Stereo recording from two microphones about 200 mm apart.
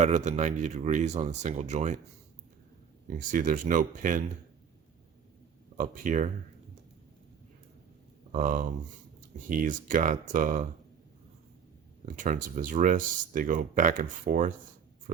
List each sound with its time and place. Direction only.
0.0 s speech: 35° right (ahead or behind)
3.1 s speech: 40° right (ahead or behind)
5.7 s speech: 40° right (ahead or behind)
8.3 s speech: 40° right (ahead or behind)
12.0 s speech: 40° right (ahead or behind)